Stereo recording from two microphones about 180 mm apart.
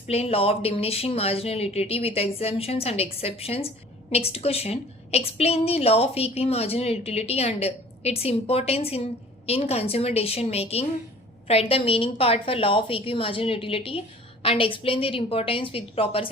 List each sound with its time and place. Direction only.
0.1 s a woman's voice: 35° left (ahead or behind)